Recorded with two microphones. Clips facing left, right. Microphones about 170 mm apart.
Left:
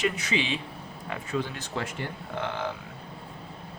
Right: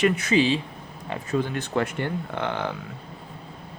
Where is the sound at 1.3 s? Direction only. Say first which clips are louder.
Right 6 dB; 50° right (ahead or behind); by 2.7 s 65° right (ahead or behind).